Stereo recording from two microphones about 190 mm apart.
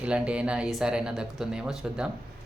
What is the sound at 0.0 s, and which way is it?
Speech, 5° right (ahead or behind).